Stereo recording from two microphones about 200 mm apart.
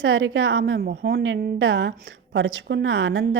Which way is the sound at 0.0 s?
90° right.